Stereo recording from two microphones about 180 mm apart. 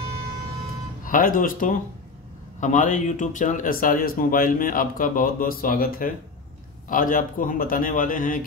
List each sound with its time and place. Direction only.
1.0 s speech: 50° left (ahead or behind)